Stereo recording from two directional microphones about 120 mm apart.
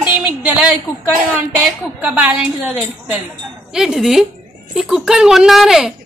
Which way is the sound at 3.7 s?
5° right (ahead or behind).